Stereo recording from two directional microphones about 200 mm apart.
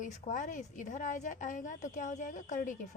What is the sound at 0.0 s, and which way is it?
A woman's voice, 40° left (ahead or behind).